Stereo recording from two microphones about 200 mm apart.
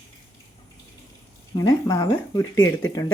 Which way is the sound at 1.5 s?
15° left (ahead or behind).